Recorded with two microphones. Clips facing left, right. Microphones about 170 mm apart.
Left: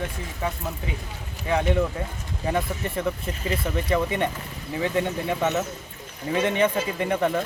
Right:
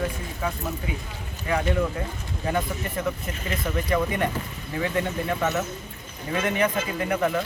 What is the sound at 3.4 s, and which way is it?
Speech, 25° left (ahead or behind).